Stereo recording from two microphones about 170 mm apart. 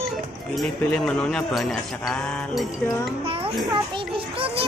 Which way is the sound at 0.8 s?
5° left (ahead or behind).